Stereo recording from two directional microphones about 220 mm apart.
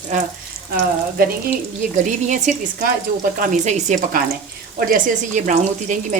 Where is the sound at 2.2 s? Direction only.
35° right (ahead or behind).